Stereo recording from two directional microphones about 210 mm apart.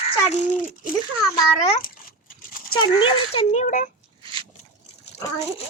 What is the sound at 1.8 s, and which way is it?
Dog, 40° left (ahead or behind).